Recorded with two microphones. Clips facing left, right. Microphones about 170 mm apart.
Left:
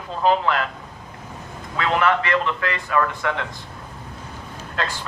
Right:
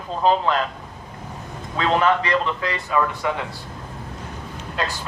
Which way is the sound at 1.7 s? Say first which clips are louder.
Right 1 dB; 30° right (ahead or behind).